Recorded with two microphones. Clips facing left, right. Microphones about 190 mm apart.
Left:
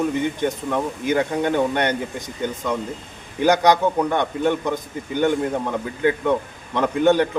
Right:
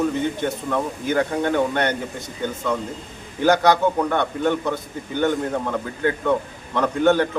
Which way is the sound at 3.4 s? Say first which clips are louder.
Even; 15° left (ahead or behind).